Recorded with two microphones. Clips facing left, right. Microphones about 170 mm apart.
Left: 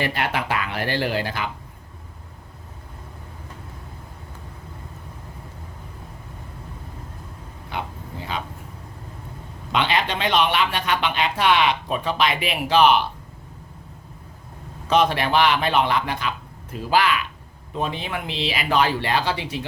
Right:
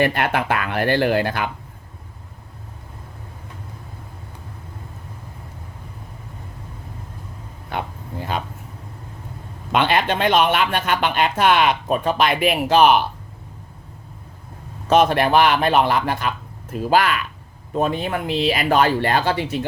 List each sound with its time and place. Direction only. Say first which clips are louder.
0.0 s speech: right 5 dB; 55° right (ahead or behind)
7.7 s a sound: right 3 dB; 50° right (ahead or behind)
8.3 s speech: right 4 dB; 50° right (ahead or behind)
9.7 s speech: right 4 dB; 50° right (ahead or behind)
14.8 s speech: right 4 dB; 50° right (ahead or behind)